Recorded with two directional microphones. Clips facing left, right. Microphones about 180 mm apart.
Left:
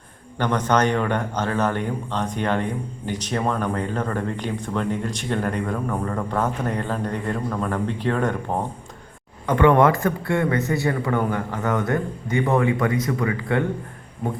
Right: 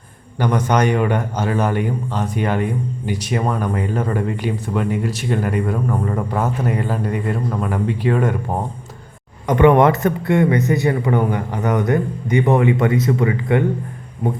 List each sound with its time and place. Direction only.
0.3 s a man's voice: 10° right (ahead or behind)